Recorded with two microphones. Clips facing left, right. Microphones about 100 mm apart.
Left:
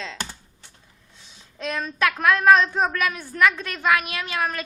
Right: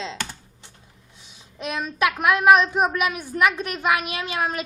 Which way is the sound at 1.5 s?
15° right (ahead or behind).